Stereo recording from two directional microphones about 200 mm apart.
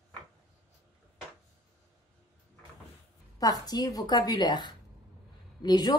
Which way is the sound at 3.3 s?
20° left (ahead or behind).